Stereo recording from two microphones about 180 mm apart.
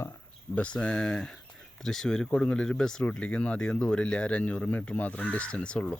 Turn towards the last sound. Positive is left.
turn(degrees=5)  # may be behind; listen again after turning